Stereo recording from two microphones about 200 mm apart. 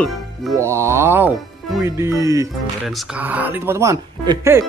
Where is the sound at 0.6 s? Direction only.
15° right (ahead or behind).